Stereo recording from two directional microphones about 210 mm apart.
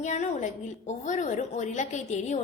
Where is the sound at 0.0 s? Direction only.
35° left (ahead or behind).